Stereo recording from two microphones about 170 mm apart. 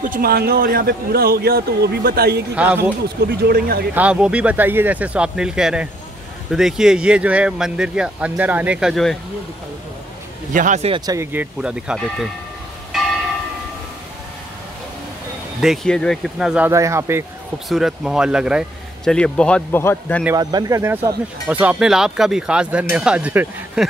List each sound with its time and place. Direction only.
0.0 s a man's voice: 60° right (ahead or behind)
2.5 s speech: 10° right (ahead or behind)
3.3 s speech: 65° right (ahead or behind)
3.9 s speech: 5° right (ahead or behind)
10.5 s speech: 45° right (ahead or behind)
11.1 s speech: 10° right (ahead or behind)
15.6 s speech: centre (ahead or behind); by 17.2 s 15° right (ahead or behind)
17.6 s speech: centre (ahead or behind)
20.3 s speech: 20° right (ahead or behind)